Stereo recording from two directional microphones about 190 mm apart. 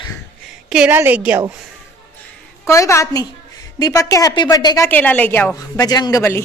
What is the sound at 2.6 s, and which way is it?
A woman's voice, 15° left (ahead or behind).